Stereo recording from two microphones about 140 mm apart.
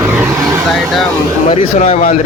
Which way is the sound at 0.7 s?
Centre (ahead or behind).